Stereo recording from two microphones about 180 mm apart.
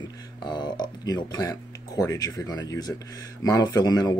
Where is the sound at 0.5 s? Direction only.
25° left (ahead or behind).